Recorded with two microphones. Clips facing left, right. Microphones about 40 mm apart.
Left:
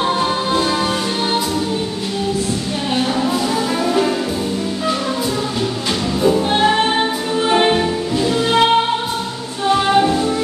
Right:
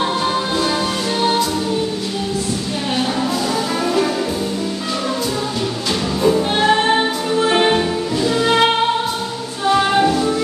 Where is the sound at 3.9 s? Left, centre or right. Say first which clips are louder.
Left 1 dB; centre.